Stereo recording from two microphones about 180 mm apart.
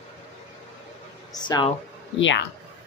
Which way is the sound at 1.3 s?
25° left (ahead or behind).